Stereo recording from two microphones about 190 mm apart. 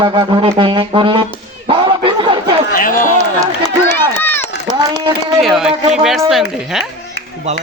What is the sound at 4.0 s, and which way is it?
Run, 10° left (ahead or behind).